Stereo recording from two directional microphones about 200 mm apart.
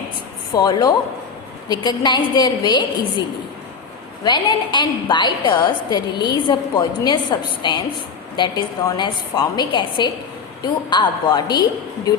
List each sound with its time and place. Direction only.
0.5 s a woman's voice: 20° left (ahead or behind)